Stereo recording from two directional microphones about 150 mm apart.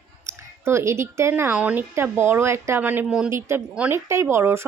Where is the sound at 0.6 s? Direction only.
15° right (ahead or behind).